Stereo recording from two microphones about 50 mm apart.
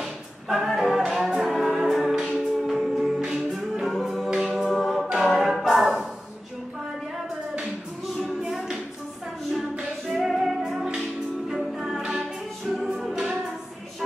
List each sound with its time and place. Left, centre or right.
0.0 s singing: centre
1.2 s music: centre
7.6 s music: centre
8.4 s music: centre
10.0 s music: centre